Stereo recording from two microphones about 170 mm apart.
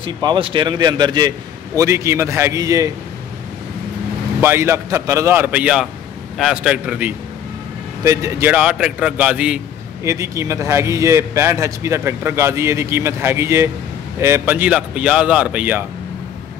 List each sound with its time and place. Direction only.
0.0 s a man's voice: 30° right (ahead or behind)
4.4 s a man's voice: 15° right (ahead or behind)
10.0 s a man's voice: 15° right (ahead or behind)